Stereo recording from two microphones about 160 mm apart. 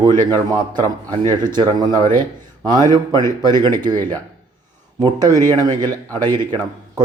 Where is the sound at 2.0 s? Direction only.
15° left (ahead or behind).